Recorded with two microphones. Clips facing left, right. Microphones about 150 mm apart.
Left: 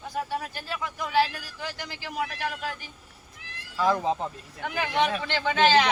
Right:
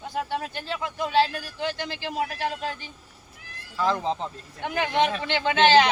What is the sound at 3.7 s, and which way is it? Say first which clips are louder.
Speech: left 1 dB; 10° left (ahead or behind).